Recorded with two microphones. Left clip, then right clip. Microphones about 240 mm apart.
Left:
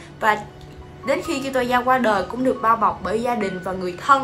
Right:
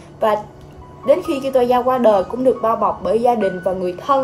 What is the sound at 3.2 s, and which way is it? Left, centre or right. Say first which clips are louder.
Speech: right 7 dB; left.